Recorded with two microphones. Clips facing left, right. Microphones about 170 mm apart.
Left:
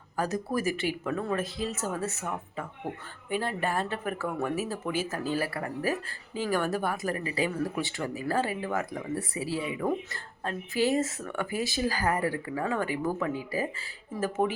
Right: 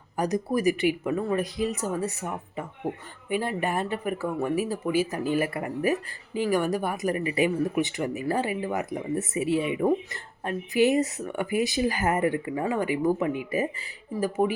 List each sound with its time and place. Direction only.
0.2 s speech: 15° right (ahead or behind)